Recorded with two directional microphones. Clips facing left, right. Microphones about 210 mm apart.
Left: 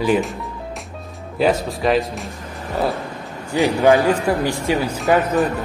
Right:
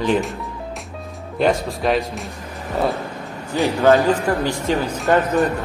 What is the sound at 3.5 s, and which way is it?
Speech, 15° left (ahead or behind).